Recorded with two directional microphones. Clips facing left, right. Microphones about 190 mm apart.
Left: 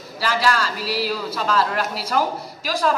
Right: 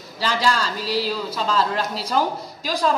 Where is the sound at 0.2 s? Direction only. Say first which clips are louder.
Left 1 dB; 25° right (ahead or behind).